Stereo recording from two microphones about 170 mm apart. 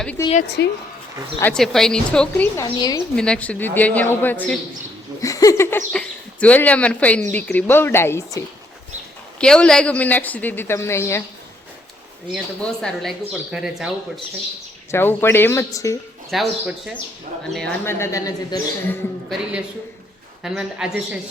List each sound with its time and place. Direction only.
0.6 s speech: 75° left (ahead or behind)
1.4 s speech: 5° left (ahead or behind)
2.6 s a woman's voice: 25° left (ahead or behind)
3.2 s speech: 5° left (ahead or behind)
5.2 s a sound: 20° left (ahead or behind)
5.9 s speech: 5° left (ahead or behind)
9.4 s speech: 5° left (ahead or behind)
12.3 s speech: 5° left (ahead or behind)
14.8 s speech: 15° left (ahead or behind)
16.3 s speech: centre (ahead or behind)
17.8 s speech: 15° left (ahead or behind)
19.3 s speech: 5° right (ahead or behind)